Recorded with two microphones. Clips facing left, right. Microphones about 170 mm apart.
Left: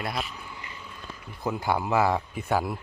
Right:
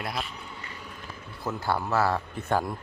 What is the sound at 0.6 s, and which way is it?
Run, 40° right (ahead or behind).